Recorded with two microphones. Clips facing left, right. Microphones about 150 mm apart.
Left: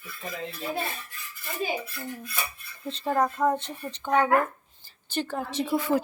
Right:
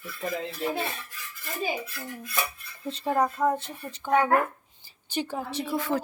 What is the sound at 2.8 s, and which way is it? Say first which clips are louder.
Speech: even; 10° right (ahead or behind).